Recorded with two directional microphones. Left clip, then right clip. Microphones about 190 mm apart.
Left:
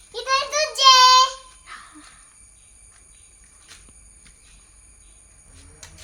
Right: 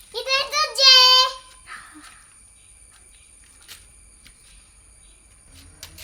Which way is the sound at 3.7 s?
20° right (ahead or behind).